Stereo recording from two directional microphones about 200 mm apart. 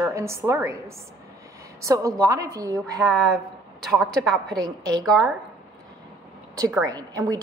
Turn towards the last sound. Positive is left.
turn(degrees=-20)  # may be behind; listen again after turning